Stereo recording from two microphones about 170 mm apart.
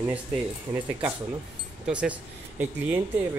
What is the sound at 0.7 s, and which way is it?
Speech, 10° right (ahead or behind).